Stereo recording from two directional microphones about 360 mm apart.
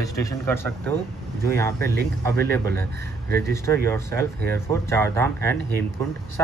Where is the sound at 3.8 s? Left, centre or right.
Centre.